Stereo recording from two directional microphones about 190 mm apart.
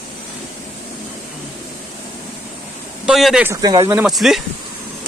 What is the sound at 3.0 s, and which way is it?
Speech, centre (ahead or behind).